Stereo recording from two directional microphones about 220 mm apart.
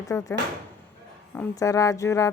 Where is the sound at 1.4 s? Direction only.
15° left (ahead or behind).